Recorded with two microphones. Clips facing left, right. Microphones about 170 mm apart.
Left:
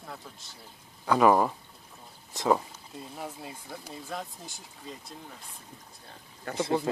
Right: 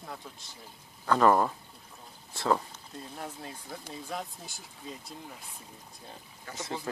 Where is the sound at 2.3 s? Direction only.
15° left (ahead or behind).